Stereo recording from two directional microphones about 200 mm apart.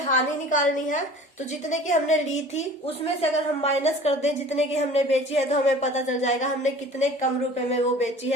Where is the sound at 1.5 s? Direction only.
35° left (ahead or behind).